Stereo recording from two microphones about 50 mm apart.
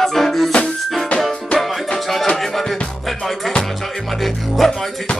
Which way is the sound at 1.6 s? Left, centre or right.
Centre.